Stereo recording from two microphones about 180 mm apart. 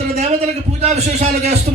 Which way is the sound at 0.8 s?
40° right (ahead or behind).